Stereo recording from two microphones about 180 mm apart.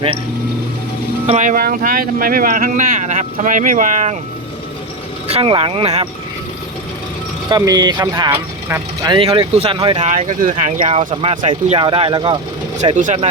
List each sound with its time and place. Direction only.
1.3 s speech: 45° right (ahead or behind)
5.3 s speech: 30° right (ahead or behind)
7.5 s speech: 20° right (ahead or behind)
9.0 s speech: 25° right (ahead or behind)
10.0 s speech: 40° right (ahead or behind)
12.8 s speech: 40° right (ahead or behind)